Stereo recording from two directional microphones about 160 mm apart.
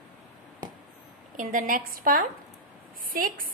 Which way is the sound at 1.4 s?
60° right (ahead or behind).